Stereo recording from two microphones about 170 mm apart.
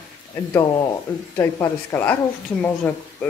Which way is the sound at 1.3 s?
15° left (ahead or behind).